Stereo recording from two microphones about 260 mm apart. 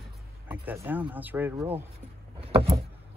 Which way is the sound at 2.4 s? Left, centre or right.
Right.